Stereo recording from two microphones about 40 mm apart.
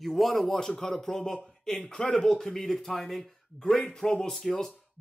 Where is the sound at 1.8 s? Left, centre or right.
Left; by 3.3 s centre.